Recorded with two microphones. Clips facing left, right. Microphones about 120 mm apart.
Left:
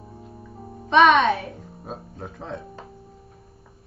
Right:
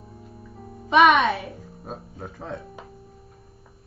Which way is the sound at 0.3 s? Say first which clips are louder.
Left 1 dB; 30° left (ahead or behind).